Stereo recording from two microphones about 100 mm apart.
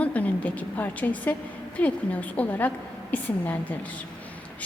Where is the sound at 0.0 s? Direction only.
15° left (ahead or behind).